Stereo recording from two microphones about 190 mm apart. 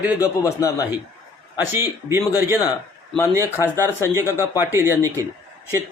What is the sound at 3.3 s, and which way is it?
Speech, 15° right (ahead or behind).